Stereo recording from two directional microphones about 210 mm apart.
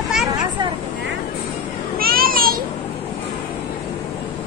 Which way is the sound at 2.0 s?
45° right (ahead or behind).